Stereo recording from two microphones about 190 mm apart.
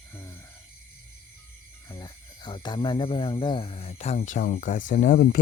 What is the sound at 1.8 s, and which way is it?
Speech, 20° left (ahead or behind).